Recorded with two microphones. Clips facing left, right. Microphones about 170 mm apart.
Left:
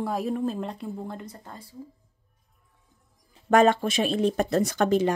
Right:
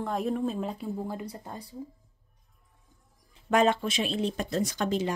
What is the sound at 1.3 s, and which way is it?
Speech, 15° right (ahead or behind).